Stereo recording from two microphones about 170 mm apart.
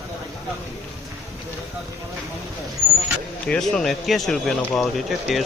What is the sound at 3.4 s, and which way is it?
Speech, 5° left (ahead or behind).